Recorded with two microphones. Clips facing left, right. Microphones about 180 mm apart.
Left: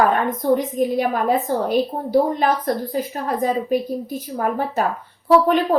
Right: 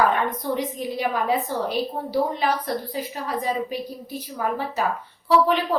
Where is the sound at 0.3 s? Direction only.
50° left (ahead or behind).